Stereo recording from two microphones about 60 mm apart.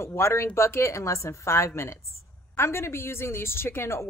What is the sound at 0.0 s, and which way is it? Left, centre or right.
A woman's voice, left.